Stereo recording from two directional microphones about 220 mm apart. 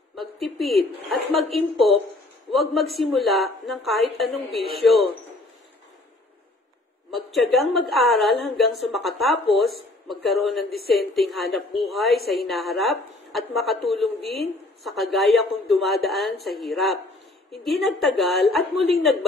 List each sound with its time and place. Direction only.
0.1 s a sound: centre (ahead or behind)
1.8 s a woman's voice: centre (ahead or behind)
7.1 s a woman's voice: centre (ahead or behind)